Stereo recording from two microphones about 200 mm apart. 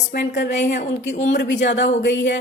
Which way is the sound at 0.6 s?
40° left (ahead or behind).